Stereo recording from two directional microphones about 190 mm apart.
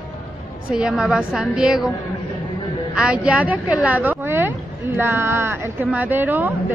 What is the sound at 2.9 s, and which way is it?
A woman's voice, 5° right (ahead or behind).